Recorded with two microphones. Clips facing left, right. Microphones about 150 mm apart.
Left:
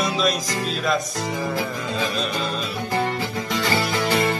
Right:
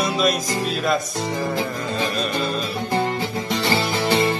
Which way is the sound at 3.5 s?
25° right (ahead or behind).